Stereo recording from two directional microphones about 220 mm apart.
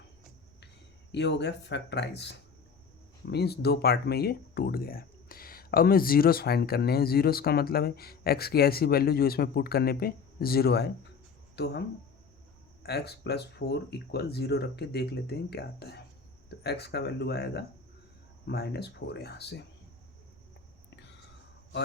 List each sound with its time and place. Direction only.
1.1 s speech: 50° left (ahead or behind)
3.3 s speech: 45° left (ahead or behind)
12.8 s speech: 45° left (ahead or behind)